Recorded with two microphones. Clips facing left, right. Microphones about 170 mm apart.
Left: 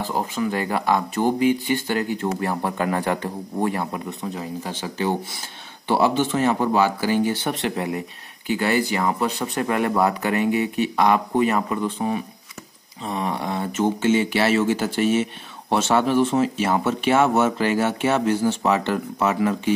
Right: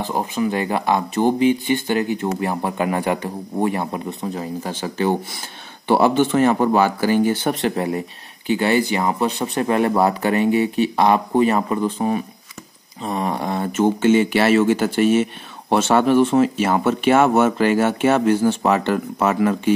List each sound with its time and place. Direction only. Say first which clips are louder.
0.0 s speech: right 3 dB; 15° right (ahead or behind)
4.2 s speech: right 3 dB; 45° right (ahead or behind)
8.5 s speech: right 3 dB; 25° right (ahead or behind); by 19.7 s 55° right (ahead or behind)